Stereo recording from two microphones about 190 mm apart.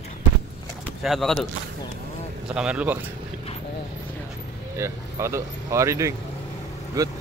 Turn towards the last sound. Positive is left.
turn(degrees=-15)  # may be behind; listen again after turning